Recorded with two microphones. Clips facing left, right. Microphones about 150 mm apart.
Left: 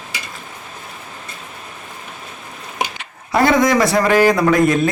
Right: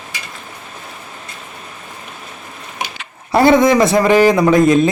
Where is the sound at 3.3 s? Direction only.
30° right (ahead or behind).